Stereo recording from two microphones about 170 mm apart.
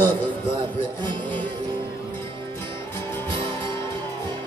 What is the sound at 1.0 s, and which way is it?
Music, 30° right (ahead or behind).